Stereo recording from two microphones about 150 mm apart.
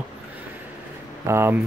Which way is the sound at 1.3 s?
15° right (ahead or behind).